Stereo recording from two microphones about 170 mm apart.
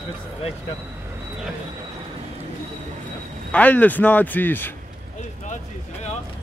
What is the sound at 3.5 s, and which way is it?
Speech, 10° left (ahead or behind).